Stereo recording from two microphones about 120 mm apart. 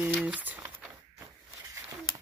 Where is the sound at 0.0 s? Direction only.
10° right (ahead or behind).